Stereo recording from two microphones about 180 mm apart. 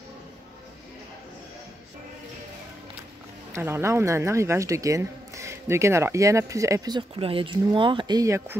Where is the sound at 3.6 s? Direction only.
15° right (ahead or behind).